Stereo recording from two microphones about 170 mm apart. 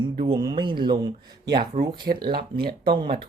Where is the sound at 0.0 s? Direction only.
30° right (ahead or behind).